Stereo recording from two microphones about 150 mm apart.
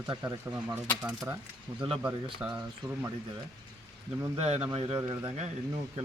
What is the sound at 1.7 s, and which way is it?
Speech, 35° right (ahead or behind).